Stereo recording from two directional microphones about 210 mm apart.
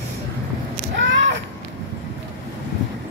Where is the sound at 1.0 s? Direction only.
60° right (ahead or behind).